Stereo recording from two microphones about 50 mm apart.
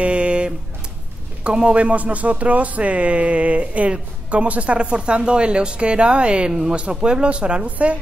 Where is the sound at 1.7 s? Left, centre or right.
Right.